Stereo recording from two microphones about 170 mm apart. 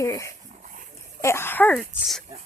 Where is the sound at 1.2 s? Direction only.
15° left (ahead or behind); by 2.2 s centre (ahead or behind).